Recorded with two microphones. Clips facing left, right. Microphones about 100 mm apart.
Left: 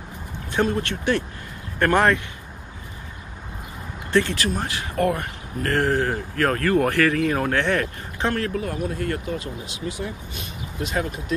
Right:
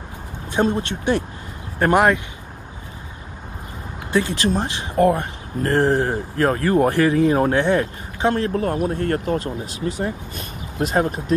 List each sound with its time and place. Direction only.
0.5 s speech: 20° right (ahead or behind)
4.1 s speech: 15° right (ahead or behind)
8.5 s speech: 45° right (ahead or behind)